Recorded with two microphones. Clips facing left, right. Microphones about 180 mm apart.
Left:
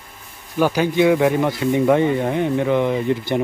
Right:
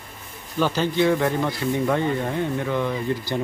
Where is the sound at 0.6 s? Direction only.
10° left (ahead or behind).